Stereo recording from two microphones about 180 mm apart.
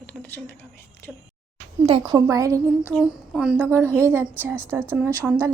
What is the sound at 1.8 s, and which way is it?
Speech, 25° right (ahead or behind).